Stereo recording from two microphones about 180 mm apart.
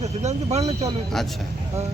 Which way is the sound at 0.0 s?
40° right (ahead or behind).